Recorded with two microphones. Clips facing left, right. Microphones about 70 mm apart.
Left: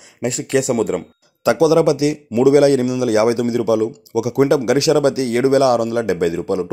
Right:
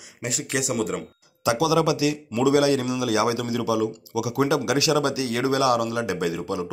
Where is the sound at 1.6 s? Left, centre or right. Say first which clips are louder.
Left 8 dB; left.